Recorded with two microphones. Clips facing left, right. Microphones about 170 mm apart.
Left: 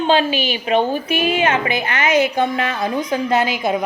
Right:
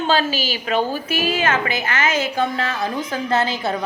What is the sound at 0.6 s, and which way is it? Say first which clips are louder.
A woman's voice: left 4 dB; 25° left (ahead or behind).